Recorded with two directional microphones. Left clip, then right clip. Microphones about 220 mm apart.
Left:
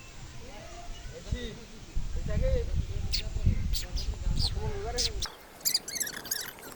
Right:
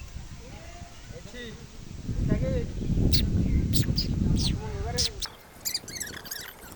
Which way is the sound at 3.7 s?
20° right (ahead or behind).